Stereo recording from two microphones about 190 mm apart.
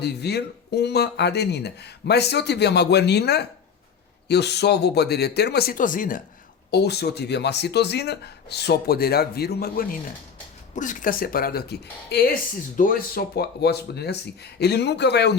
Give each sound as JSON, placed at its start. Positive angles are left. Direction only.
{"t": 0.0, "sound": "speech", "side_deg": 60}
{"t": 6.7, "sound": "speech", "side_deg": 60}